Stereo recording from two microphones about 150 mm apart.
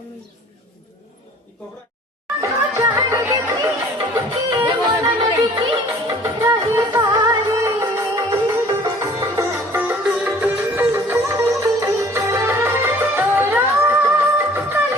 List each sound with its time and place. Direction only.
2.4 s music: 20° right (ahead or behind)
4.5 s music: 30° right (ahead or behind)
6.1 s music: 20° right (ahead or behind)
9.7 s sitar: 15° right (ahead or behind)